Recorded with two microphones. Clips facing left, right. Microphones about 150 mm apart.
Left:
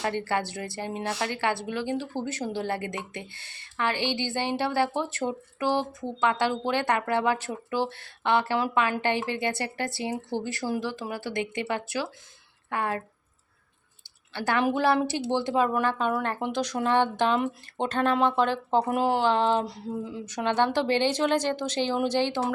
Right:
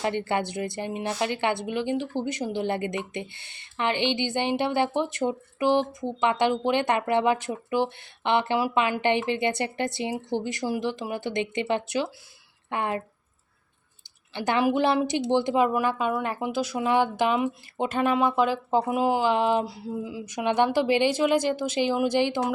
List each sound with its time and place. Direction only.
0.0 s speech: 20° right (ahead or behind)
14.3 s speech: 20° right (ahead or behind)